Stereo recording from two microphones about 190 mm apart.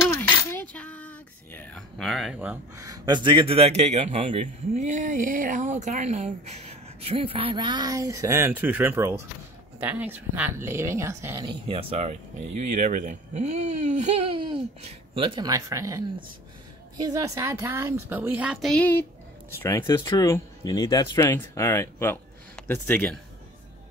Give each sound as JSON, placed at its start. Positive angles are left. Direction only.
{"t": 0.0, "sound": "a woman's voice", "side_deg": 15}
{"t": 11.6, "sound": "a woman's voice", "side_deg": -30}